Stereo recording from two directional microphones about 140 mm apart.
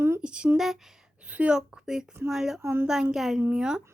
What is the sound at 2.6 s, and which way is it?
Speech, 15° right (ahead or behind).